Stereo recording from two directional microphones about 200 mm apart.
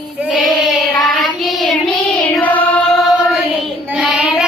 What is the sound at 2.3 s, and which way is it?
Music, 10° left (ahead or behind).